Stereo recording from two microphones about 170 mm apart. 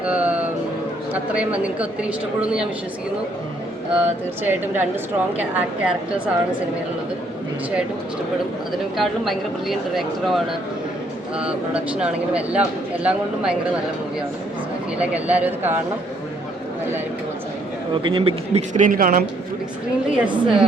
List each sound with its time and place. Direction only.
0.0 s music: 10° right (ahead or behind)
1.1 s speech: 10° right (ahead or behind)
4.4 s speech: 10° right (ahead or behind)
9.0 s speech: centre (ahead or behind)
15.1 s speech: 10° right (ahead or behind)
18.0 s speech: 30° right (ahead or behind); by 19.2 s 55° right (ahead or behind)
20.1 s speech: 5° right (ahead or behind)